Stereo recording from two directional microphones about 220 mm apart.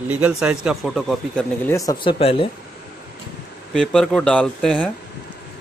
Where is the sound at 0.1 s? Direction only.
5° right (ahead or behind); by 2.5 s 25° left (ahead or behind).